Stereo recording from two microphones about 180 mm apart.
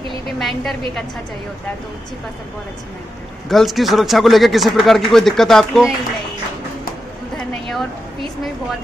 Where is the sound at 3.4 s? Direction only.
Centre (ahead or behind).